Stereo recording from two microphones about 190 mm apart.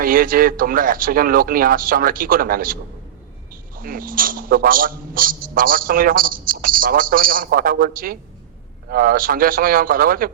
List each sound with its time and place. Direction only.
0.0 s a man's voice: 50° right (ahead or behind)